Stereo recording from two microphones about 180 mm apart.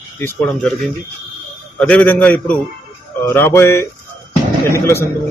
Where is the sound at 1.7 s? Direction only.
5° left (ahead or behind).